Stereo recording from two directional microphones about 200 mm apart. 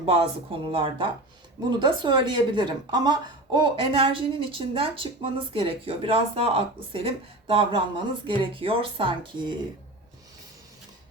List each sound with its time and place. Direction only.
0.0 s a woman's voice: 30° right (ahead or behind)